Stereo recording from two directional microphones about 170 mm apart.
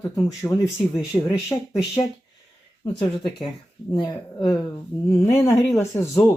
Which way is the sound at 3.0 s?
30° left (ahead or behind).